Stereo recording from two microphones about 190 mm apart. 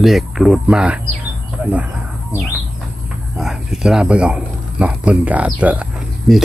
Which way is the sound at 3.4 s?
Centre (ahead or behind).